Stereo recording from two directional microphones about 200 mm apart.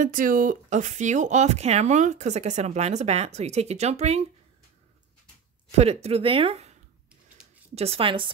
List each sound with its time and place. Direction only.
0.0 s speech: 40° right (ahead or behind)
5.7 s speech: 30° right (ahead or behind)
7.7 s a woman's voice: 30° right (ahead or behind)